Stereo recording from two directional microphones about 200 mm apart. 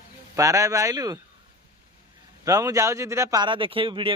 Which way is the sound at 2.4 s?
15° right (ahead or behind).